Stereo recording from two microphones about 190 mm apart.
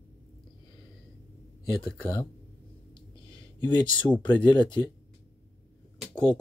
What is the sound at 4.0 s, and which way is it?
Speech, 25° left (ahead or behind).